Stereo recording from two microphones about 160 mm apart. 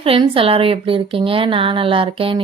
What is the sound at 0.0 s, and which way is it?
A woman's voice, 35° right (ahead or behind).